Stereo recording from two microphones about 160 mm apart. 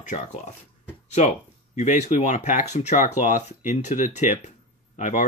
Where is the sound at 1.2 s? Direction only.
45° left (ahead or behind).